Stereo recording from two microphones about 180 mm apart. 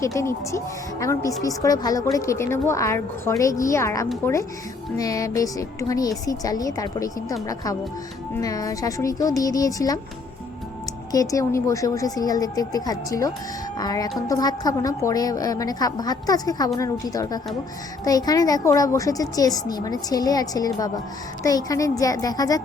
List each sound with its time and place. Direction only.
0.0 s a woman's voice: 15° left (ahead or behind)
11.1 s a woman's voice: 20° left (ahead or behind)